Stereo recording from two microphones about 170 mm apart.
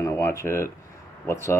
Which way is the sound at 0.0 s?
15° left (ahead or behind).